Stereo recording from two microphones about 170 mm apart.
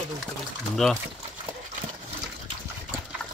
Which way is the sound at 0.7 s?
Centre (ahead or behind).